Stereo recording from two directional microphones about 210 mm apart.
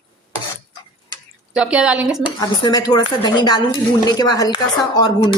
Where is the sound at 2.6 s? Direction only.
20° left (ahead or behind).